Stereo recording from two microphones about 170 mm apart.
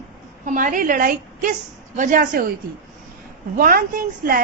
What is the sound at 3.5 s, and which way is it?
Speech, 55° right (ahead or behind).